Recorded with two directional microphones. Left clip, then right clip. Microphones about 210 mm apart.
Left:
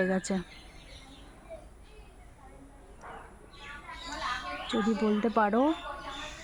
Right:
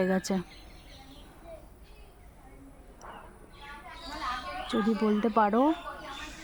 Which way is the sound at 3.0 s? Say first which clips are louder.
Left 1 dB; 50° left (ahead or behind).